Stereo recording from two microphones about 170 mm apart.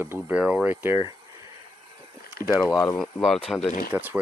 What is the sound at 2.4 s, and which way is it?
Rowboat, 65° left (ahead or behind).